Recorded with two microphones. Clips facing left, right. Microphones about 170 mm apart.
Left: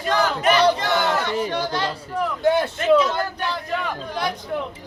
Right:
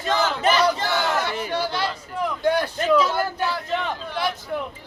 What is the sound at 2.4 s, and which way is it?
Speech, 25° left (ahead or behind).